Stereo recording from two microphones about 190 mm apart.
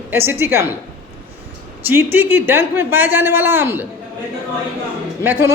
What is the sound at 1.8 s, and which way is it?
Speech, 10° right (ahead or behind).